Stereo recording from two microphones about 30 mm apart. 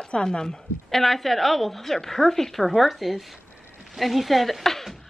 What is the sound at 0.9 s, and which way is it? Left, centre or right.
A woman's voice, centre.